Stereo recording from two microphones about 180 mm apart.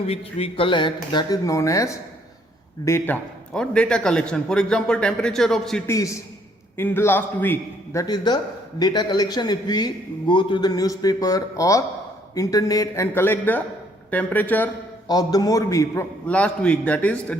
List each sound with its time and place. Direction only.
0.0 s a man's voice: 35° left (ahead or behind); by 5.8 s centre (ahead or behind)
5.9 s a man's voice: 15° left (ahead or behind)
8.0 s a man's voice: 25° left (ahead or behind)
15.0 s a man's voice: 20° left (ahead or behind)
16.2 s a man's voice: 5° left (ahead or behind)